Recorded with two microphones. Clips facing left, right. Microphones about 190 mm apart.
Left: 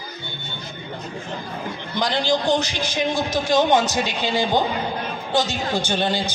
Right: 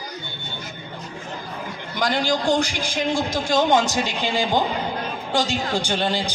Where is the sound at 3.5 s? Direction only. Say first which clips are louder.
Left 1 dB; 15° left (ahead or behind).